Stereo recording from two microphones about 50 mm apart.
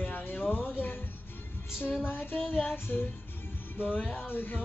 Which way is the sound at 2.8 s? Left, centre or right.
Left.